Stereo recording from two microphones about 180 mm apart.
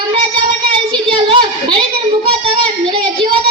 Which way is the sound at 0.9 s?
30° right (ahead or behind).